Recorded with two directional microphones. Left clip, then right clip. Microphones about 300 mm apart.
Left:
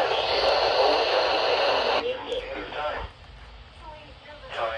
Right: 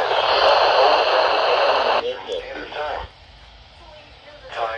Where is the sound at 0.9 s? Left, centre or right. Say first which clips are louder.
Right 6 dB; centre.